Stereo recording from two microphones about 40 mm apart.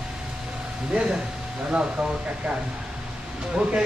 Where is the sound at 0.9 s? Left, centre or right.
Right.